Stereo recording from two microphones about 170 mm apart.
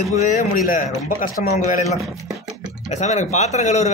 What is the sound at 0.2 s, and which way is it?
A man's voice, 45° left (ahead or behind).